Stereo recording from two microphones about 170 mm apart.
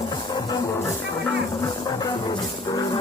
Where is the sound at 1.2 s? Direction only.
20° left (ahead or behind).